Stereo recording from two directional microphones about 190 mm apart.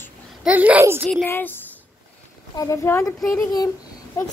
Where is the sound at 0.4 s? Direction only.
5° right (ahead or behind).